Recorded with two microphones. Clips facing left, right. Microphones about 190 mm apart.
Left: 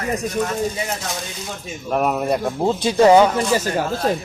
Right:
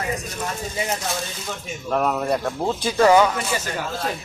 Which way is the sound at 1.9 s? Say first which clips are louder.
Left 2 dB; 15° left (ahead or behind).